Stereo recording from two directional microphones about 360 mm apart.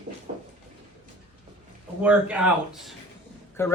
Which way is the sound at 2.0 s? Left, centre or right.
Centre.